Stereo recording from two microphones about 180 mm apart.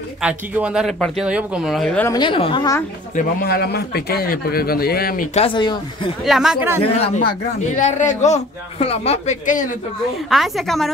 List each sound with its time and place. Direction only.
0.2 s speech: 5° right (ahead or behind)
2.1 s a woman's voice: 30° left (ahead or behind)
3.2 s speech: 55° left (ahead or behind)
5.4 s a woman's voice: 25° left (ahead or behind)
6.2 s speech: centre (ahead or behind)
6.8 s a man's voice: 35° left (ahead or behind)
7.7 s a man's voice: 45° left (ahead or behind)
10.3 s speech: centre (ahead or behind)